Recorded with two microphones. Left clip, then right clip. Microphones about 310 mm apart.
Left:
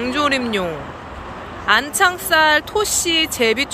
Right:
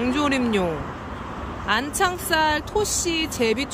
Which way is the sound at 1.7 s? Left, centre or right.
Centre.